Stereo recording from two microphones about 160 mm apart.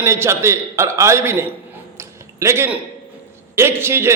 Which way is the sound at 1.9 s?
15° right (ahead or behind).